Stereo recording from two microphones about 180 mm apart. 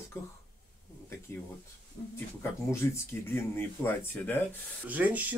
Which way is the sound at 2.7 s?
15° left (ahead or behind).